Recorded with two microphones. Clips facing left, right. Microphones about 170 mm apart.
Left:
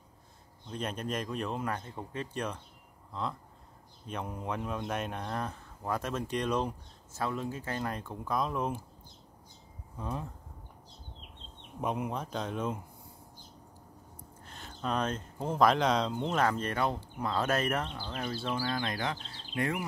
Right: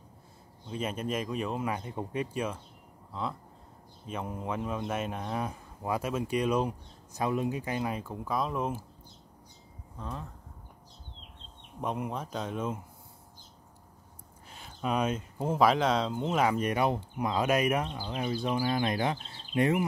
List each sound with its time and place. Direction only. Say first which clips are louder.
0.7 s speech: right 3 dB; 5° right (ahead or behind)
9.9 s speech: left 2 dB; 10° left (ahead or behind)
11.8 s speech: even; centre (ahead or behind)
14.5 s speech: right 2 dB; 10° right (ahead or behind)